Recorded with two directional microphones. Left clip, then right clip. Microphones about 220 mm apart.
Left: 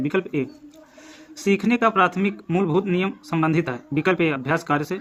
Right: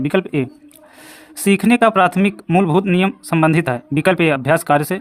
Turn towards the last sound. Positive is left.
turn(degrees=-50)  # may be behind; listen again after turning